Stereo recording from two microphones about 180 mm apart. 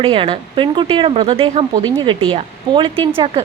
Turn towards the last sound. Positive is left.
turn(degrees=-30)  # may be behind; listen again after turning